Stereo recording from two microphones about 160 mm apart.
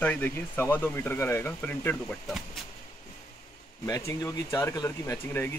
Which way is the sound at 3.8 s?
20° left (ahead or behind).